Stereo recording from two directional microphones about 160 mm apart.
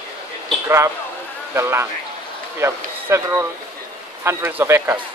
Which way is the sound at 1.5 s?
15° right (ahead or behind).